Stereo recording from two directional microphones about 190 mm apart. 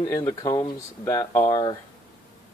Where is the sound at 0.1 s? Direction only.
20° left (ahead or behind).